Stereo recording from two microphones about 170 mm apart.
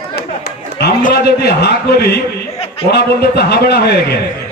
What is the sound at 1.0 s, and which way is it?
A man's voice, 65° left (ahead or behind).